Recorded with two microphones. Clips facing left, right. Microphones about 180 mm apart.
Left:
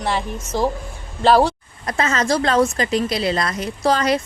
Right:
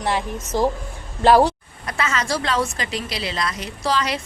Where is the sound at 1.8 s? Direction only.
40° left (ahead or behind).